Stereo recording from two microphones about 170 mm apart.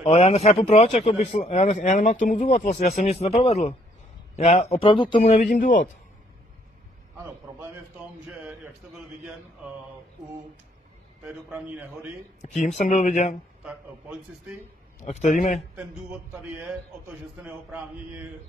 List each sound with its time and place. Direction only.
0.0 s speech: 40° left (ahead or behind)
5.3 s speech: 45° left (ahead or behind)
8.3 s a sound: 5° right (ahead or behind)
11.2 s a man's voice: 5° right (ahead or behind)
12.4 s speech: 40° left (ahead or behind)
15.0 s speech: 40° left (ahead or behind)
15.5 s speech: 5° right (ahead or behind)
17.4 s a man's voice: 5° right (ahead or behind)